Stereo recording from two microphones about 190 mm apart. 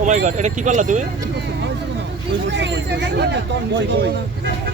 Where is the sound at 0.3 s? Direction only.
40° right (ahead or behind).